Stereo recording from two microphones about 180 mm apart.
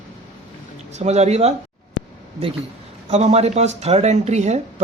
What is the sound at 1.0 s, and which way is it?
Speech, 40° right (ahead or behind).